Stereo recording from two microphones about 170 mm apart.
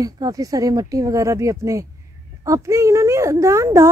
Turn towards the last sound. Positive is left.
turn(degrees=-15)  # may be behind; listen again after turning